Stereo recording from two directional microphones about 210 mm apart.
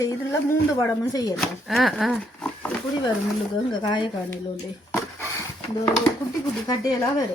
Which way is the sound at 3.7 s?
20° left (ahead or behind).